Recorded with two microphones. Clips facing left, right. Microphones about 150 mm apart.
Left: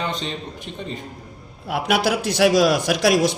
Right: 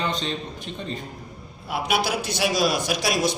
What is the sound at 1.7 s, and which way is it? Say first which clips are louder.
A man's voice: left 4 dB; 90° left.